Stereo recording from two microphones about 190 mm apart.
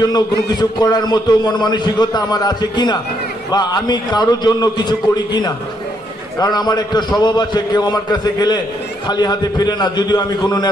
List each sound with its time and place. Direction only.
0.6 s a man's voice: 20° left (ahead or behind)